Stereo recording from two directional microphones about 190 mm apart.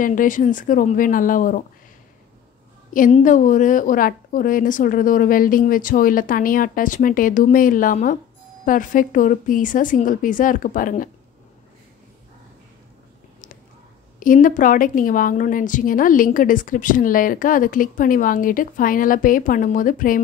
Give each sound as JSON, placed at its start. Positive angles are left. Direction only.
{"t": 0.0, "sound": "a woman's voice", "side_deg": 45}
{"t": 2.9, "sound": "a woman's voice", "side_deg": 40}
{"t": 14.2, "sound": "a woman's voice", "side_deg": 45}